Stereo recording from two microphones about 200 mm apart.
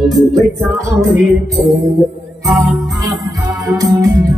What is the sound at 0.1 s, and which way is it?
Music, 15° right (ahead or behind).